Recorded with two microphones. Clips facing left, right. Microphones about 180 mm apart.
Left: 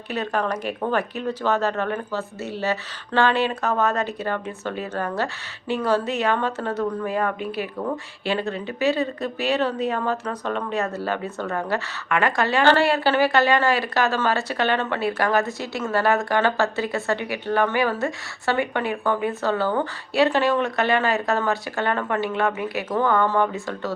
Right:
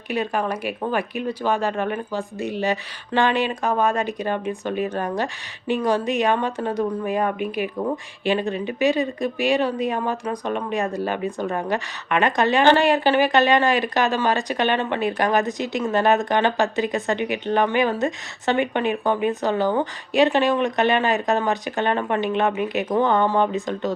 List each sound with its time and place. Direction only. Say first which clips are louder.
0.1 s speech: right 1 dB; 10° right (ahead or behind)